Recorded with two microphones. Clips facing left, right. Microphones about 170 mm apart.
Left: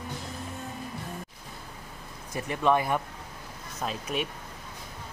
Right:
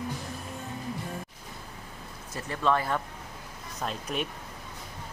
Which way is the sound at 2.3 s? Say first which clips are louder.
Left 2 dB; 15° left (ahead or behind).